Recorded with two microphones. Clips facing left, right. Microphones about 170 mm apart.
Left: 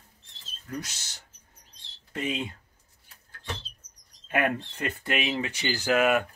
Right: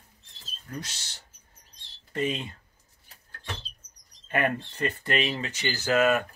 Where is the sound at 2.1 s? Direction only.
10° left (ahead or behind).